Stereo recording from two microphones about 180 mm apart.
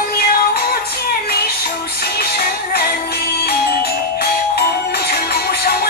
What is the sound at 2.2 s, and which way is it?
Music, 60° left (ahead or behind).